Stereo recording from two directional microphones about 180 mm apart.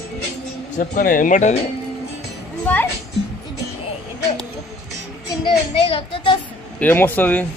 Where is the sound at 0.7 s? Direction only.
50° left (ahead or behind).